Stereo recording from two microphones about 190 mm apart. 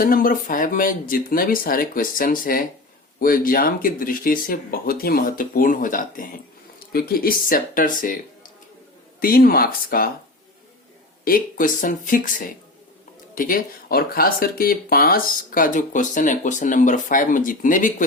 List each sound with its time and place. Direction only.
0.0 s speech: 50° left (ahead or behind)
9.2 s speech: 50° left (ahead or behind)
11.3 s speech: 50° left (ahead or behind)